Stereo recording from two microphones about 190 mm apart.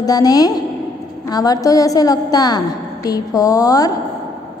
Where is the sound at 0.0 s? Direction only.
20° left (ahead or behind).